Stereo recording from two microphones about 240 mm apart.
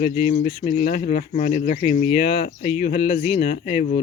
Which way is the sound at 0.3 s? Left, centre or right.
Left.